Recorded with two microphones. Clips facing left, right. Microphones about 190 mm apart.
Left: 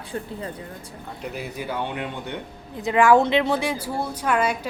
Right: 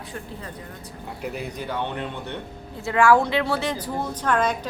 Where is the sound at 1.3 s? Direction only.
5° left (ahead or behind).